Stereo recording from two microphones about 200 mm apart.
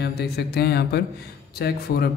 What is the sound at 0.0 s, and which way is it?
Speech, 55° left (ahead or behind).